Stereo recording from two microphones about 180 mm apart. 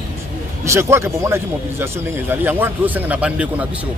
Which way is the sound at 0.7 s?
15° right (ahead or behind).